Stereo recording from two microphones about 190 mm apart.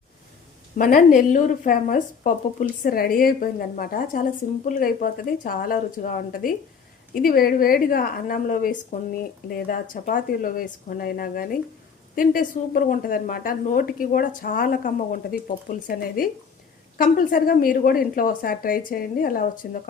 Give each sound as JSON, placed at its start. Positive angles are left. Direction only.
{"t": 0.8, "sound": "a woman's voice", "side_deg": 45}